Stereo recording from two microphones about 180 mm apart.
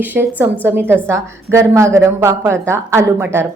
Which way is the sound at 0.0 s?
10° right (ahead or behind).